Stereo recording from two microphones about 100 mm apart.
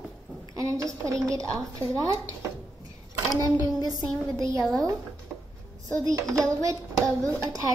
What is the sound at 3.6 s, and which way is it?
Hands, 40° right (ahead or behind).